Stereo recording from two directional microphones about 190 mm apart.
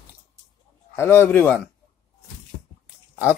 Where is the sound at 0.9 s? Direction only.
10° left (ahead or behind).